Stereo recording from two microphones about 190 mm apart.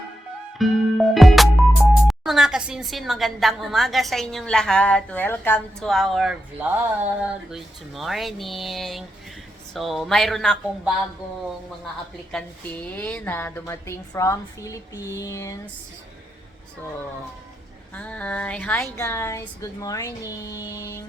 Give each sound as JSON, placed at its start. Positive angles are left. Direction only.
{"t": 0.6, "sound": "speech", "side_deg": 0}
{"t": 12.3, "sound": "a woman's voice", "side_deg": 5}
{"t": 17.9, "sound": "a woman's voice", "side_deg": 5}